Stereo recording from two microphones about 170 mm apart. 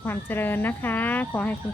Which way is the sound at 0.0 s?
10° left (ahead or behind).